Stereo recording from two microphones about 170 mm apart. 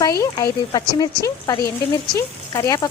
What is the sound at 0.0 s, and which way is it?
A woman's voice, 20° left (ahead or behind).